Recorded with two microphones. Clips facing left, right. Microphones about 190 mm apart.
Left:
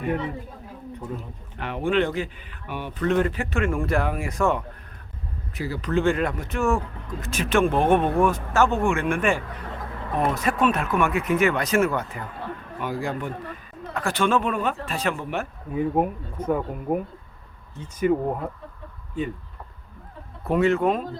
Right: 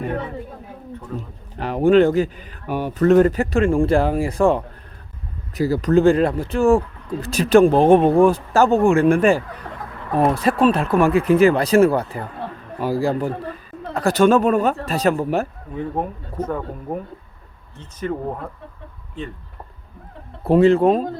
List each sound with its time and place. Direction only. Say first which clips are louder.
1.5 s speech: right 9 dB; 40° right (ahead or behind)
15.7 s speech: left 3 dB; 10° left (ahead or behind)
20.4 s speech: right 7 dB; 30° right (ahead or behind)